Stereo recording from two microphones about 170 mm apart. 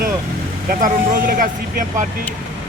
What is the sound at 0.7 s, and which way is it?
Speech, 50° right (ahead or behind).